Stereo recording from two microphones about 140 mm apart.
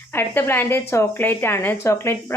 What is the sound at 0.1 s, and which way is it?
Speech, 15° left (ahead or behind).